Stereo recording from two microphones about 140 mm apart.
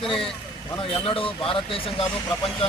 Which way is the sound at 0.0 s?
40° left (ahead or behind).